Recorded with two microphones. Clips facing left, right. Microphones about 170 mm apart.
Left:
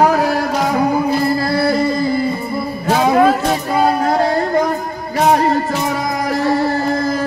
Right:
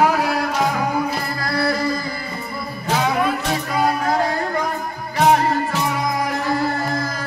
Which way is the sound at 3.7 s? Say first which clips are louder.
Left 4 dB; 30° left (ahead or behind).